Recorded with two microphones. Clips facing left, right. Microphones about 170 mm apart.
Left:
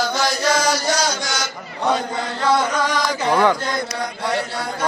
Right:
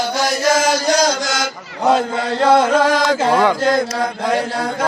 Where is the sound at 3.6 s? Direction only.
90° right.